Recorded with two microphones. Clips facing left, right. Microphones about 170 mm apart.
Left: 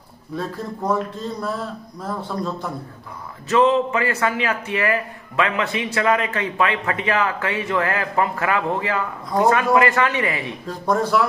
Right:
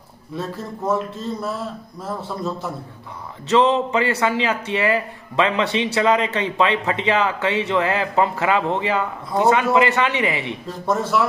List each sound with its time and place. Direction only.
0.4 s speech: 5° right (ahead or behind)
3.4 s speech: 25° right (ahead or behind)
10.9 s speech: centre (ahead or behind)